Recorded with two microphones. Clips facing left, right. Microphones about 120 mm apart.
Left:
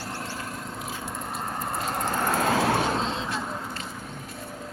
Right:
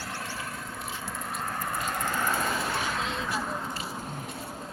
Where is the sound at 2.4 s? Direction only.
75° left (ahead or behind).